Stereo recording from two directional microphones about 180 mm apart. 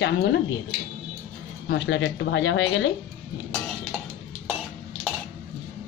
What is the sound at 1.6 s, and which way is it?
Speech, 80° left.